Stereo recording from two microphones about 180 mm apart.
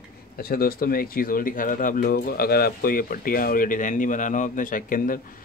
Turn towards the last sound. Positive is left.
turn(degrees=50)  # may be behind; listen again after turning